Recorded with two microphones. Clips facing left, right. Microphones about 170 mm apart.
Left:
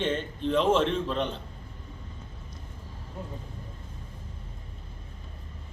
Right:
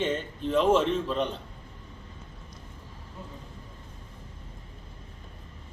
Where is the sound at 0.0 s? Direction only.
5° right (ahead or behind).